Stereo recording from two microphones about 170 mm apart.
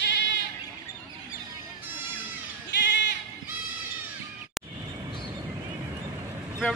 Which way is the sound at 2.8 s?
90° left.